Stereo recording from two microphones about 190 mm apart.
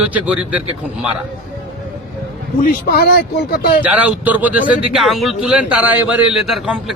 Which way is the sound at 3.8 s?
10° right (ahead or behind).